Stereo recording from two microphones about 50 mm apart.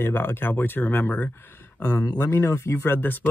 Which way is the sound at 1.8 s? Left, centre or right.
Left.